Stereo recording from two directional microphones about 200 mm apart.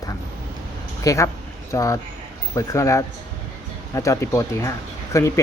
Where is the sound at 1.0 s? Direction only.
15° left (ahead or behind).